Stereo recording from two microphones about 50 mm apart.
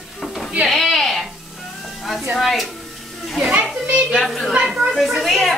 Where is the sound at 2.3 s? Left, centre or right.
Centre.